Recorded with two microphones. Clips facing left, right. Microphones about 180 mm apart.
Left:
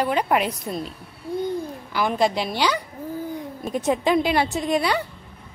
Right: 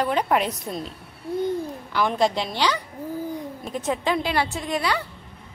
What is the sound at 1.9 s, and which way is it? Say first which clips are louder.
Speech: even; 5° left (ahead or behind).